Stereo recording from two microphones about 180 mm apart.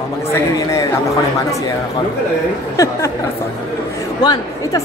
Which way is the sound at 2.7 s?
20° left (ahead or behind).